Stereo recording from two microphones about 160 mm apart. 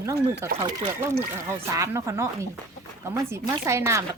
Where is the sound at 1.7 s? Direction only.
20° right (ahead or behind).